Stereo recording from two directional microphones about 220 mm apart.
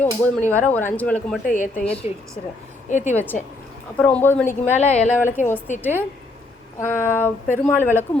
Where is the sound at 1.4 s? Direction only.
35° left (ahead or behind).